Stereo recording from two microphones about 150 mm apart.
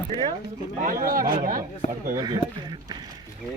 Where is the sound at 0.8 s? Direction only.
70° right (ahead or behind).